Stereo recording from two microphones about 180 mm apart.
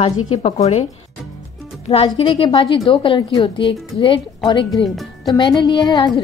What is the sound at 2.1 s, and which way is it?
A woman's voice, 30° left (ahead or behind).